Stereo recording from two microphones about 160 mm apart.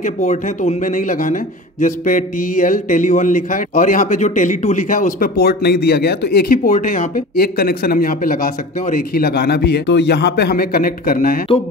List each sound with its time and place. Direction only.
0.0 s a man's voice: 50° left (ahead or behind)